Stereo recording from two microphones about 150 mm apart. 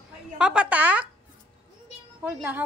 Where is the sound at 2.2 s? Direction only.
10° right (ahead or behind).